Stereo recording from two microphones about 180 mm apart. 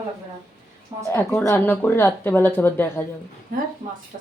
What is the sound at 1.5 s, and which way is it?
Speech, 10° left (ahead or behind).